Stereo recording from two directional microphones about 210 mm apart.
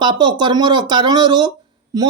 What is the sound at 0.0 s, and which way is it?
A woman's voice, 20° right (ahead or behind).